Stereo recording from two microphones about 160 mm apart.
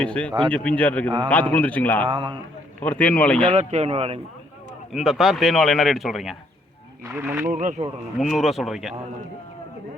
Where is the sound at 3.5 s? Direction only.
40° right (ahead or behind).